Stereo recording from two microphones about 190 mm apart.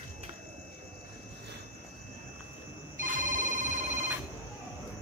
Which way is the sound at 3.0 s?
45° right (ahead or behind).